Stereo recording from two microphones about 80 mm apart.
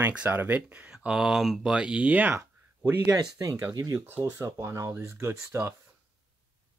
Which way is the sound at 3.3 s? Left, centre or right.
Right.